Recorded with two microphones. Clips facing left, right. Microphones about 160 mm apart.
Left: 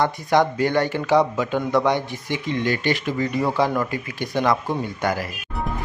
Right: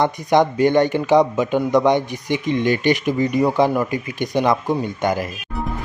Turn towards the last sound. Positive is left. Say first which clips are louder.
# right 4 dB
turn(degrees=-20)  # may be behind; listen again after turning